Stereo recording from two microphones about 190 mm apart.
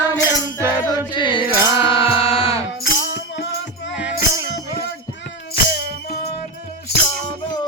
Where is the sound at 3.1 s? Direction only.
55° left (ahead or behind).